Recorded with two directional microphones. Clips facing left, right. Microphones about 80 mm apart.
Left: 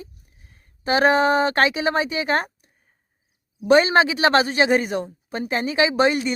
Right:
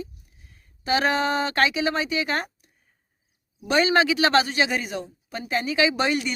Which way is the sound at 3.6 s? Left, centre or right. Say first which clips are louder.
Left 5 dB; left.